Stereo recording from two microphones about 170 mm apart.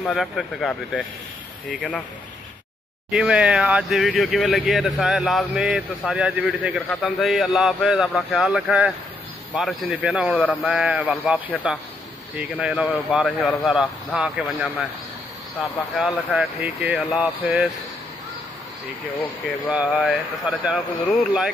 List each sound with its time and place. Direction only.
0.0 s speech: 5° left (ahead or behind)
3.1 s speech: 5° right (ahead or behind)
19.7 s speech: 5° right (ahead or behind)